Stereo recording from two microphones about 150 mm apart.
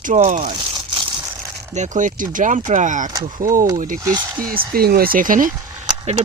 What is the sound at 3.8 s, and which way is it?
Speech, 65° right (ahead or behind).